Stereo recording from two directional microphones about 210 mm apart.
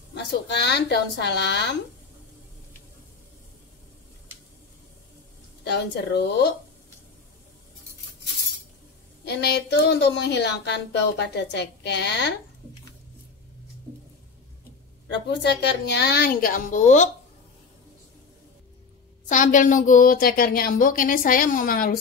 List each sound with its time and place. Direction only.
0.1 s speech: 55° left (ahead or behind)
5.6 s a woman's voice: 55° left (ahead or behind)
9.2 s a woman's voice: 50° left (ahead or behind)
15.0 s a woman's voice: 55° left (ahead or behind); by 17.1 s 35° left (ahead or behind)
19.2 s a woman's voice: 35° left (ahead or behind)